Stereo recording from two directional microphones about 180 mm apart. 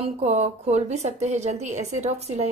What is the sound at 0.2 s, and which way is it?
A woman's voice, 35° right (ahead or behind).